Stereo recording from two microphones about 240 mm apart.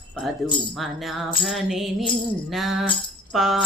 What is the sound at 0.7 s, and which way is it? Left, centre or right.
A woman's voice, centre.